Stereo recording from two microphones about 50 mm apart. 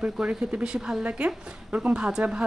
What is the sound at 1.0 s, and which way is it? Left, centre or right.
A woman's voice, right.